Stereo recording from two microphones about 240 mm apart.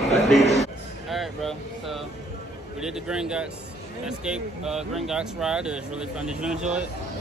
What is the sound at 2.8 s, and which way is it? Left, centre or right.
A man's voice, centre.